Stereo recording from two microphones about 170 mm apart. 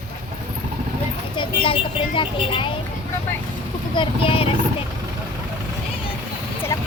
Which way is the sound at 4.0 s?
30° left (ahead or behind).